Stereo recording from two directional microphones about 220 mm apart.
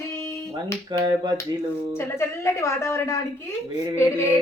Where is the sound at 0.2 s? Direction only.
10° left (ahead or behind).